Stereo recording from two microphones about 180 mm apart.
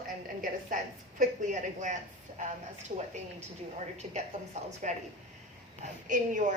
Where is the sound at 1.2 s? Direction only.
45° right (ahead or behind).